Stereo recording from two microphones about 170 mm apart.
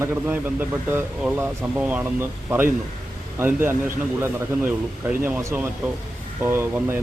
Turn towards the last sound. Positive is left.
turn(degrees=-15)  # may be behind; listen again after turning